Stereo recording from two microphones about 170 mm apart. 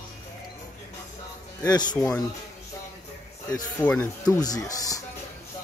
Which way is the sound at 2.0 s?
10° left (ahead or behind).